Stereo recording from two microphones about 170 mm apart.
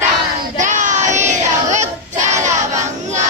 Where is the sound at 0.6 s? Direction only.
45° right (ahead or behind).